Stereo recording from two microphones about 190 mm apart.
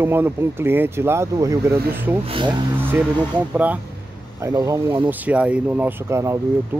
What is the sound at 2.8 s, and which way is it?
Speech, 10° right (ahead or behind).